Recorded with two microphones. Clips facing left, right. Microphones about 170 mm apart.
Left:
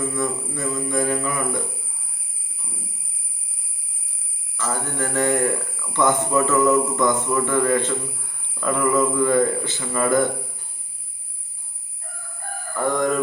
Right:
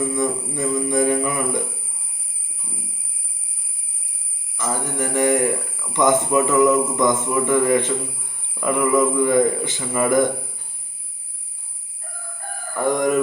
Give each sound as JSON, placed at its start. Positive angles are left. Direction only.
{"t": 0.2, "sound": "speech", "side_deg": -20}
{"t": 4.5, "sound": "speech", "side_deg": -15}
{"t": 12.7, "sound": "speech", "side_deg": -15}